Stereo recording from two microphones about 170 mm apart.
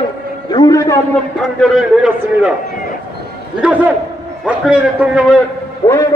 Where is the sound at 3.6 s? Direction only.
10° right (ahead or behind).